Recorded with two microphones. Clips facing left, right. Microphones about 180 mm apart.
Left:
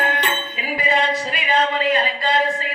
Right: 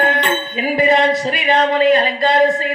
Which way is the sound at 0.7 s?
40° right (ahead or behind).